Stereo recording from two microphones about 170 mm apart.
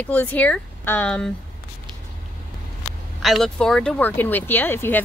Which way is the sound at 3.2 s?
Centre (ahead or behind).